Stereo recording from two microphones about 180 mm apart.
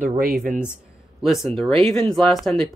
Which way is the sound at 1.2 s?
Centre (ahead or behind).